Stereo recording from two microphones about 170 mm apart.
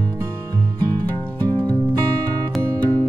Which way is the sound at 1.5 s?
20° right (ahead or behind).